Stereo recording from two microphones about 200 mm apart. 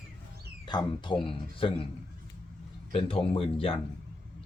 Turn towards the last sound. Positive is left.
turn(degrees=30)  # may be behind; listen again after turning